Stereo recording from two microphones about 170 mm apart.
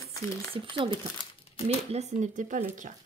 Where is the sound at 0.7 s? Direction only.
30° right (ahead or behind).